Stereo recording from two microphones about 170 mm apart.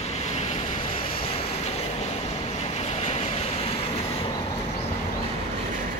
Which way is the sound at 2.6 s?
40° left (ahead or behind).